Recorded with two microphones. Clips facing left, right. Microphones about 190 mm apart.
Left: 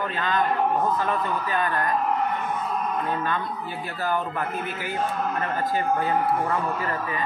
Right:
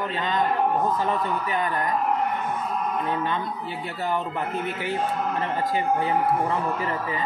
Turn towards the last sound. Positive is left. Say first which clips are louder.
# even
turn(degrees=-20)  # may be behind; listen again after turning